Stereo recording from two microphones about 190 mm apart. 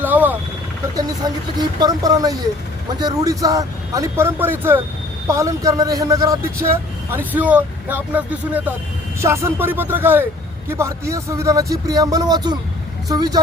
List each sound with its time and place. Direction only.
0.0 s vehicle: 10° right (ahead or behind)
0.9 s speech: 20° right (ahead or behind)